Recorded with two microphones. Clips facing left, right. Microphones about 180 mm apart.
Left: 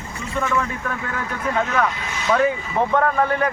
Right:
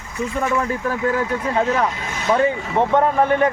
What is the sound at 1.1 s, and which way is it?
Speech, 25° right (ahead or behind).